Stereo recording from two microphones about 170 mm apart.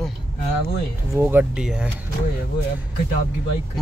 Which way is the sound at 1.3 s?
5° right (ahead or behind).